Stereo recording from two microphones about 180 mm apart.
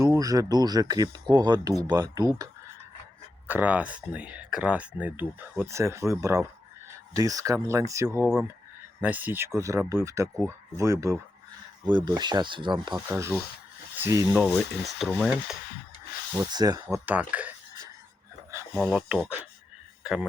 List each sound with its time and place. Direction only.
0.0 s speech: 20° right (ahead or behind)
3.4 s speech: 10° right (ahead or behind); by 12.9 s 25° right (ahead or behind)
13.1 s speech: 15° right (ahead or behind)
14.4 s speech: 5° left (ahead or behind)
16.4 s speech: 20° right (ahead or behind)
17.1 s speech: 10° right (ahead or behind)
18.8 s speech: 5° right (ahead or behind)